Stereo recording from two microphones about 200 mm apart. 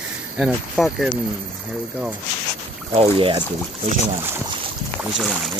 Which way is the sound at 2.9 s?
30° right (ahead or behind).